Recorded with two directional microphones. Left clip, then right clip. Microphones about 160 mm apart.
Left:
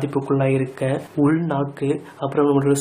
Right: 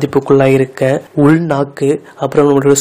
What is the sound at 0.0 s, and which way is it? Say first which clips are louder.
Speech: right 11 dB; 45° right (ahead or behind).